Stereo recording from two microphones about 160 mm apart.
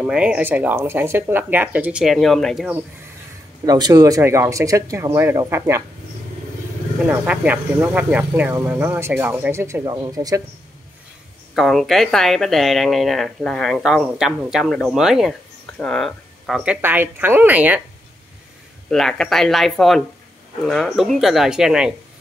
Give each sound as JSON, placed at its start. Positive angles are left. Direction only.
{"t": 0.0, "sound": "speech", "side_deg": -5}
{"t": 3.6, "sound": "speech", "side_deg": -25}
{"t": 7.1, "sound": "speech", "side_deg": -10}
{"t": 11.5, "sound": "speech", "side_deg": 0}
{"t": 16.8, "sound": "speech", "side_deg": -10}
{"t": 18.9, "sound": "speech", "side_deg": 5}